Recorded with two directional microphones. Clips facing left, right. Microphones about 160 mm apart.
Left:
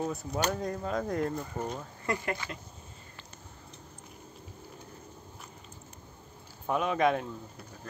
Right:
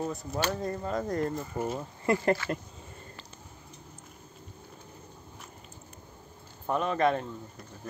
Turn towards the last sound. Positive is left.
turn(degrees=5)  # may be behind; listen again after turning